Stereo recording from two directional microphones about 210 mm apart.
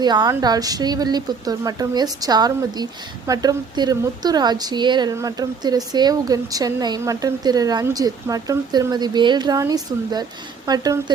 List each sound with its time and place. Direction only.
0.0 s a woman's voice: 20° right (ahead or behind)